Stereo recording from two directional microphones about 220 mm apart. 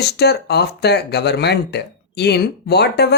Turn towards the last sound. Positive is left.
turn(degrees=50)  # may be behind; listen again after turning